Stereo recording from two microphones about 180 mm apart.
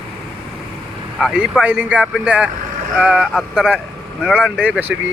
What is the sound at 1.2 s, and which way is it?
Speech, 5° right (ahead or behind).